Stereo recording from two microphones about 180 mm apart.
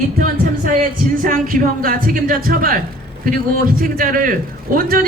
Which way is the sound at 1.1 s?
50° right (ahead or behind).